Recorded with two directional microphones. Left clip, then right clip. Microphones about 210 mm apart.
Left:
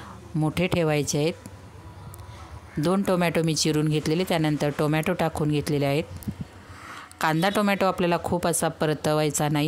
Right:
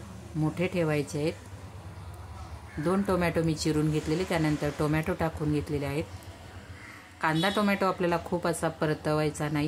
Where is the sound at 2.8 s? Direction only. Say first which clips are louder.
Left 4 dB; 45° left (ahead or behind).